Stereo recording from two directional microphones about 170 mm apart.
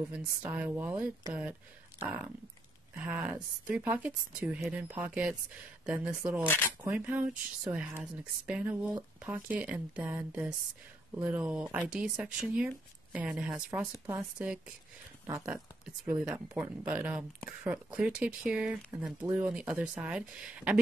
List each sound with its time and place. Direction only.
0.4 s speech: 10° right (ahead or behind)
2.9 s speech: 10° right (ahead or behind)
6.4 s speech: 15° left (ahead or behind)
6.9 s speech: 5° right (ahead or behind)